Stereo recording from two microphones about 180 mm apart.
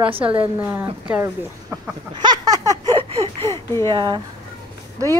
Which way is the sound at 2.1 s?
25° right (ahead or behind).